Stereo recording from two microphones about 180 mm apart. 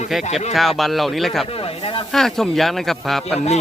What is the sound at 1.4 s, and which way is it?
Speech, 30° left (ahead or behind).